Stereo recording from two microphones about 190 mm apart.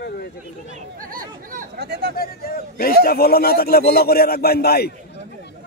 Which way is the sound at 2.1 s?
50° left (ahead or behind).